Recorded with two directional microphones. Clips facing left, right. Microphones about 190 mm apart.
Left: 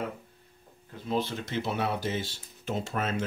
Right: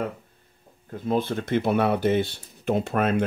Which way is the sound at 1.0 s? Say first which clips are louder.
Right 6 dB; 55° right (ahead or behind).